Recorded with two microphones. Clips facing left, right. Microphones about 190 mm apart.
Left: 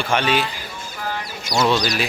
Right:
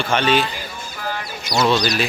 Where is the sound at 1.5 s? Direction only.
Centre (ahead or behind).